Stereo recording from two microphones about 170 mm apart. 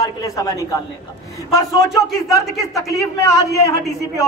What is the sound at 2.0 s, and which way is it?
Speech, 20° left (ahead or behind).